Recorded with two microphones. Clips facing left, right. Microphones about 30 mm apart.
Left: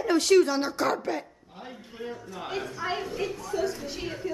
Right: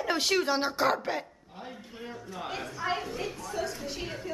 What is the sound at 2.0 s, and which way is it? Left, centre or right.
A woman's voice, centre.